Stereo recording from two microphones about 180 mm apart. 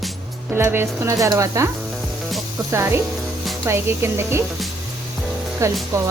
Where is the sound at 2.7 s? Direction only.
15° right (ahead or behind).